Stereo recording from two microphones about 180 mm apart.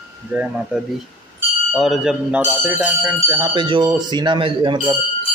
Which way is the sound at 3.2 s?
25° right (ahead or behind).